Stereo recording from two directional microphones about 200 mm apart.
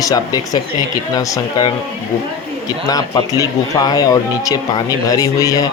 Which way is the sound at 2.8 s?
20° left (ahead or behind).